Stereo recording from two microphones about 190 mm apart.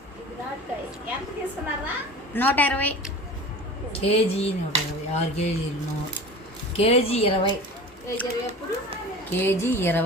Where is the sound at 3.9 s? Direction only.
30° left (ahead or behind).